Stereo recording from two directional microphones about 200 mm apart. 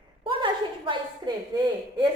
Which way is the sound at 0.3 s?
25° right (ahead or behind).